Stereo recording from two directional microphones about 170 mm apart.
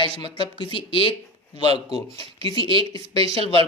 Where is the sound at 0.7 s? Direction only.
30° left (ahead or behind).